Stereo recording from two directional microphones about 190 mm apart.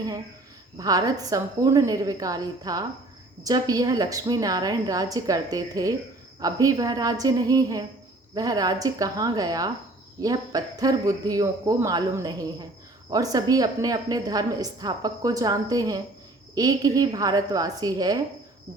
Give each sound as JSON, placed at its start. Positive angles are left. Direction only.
{"t": 0.8, "sound": "a woman's voice", "side_deg": -20}